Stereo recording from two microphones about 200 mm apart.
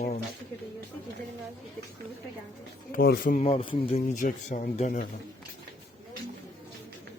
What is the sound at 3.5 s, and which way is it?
Speech, 30° left (ahead or behind).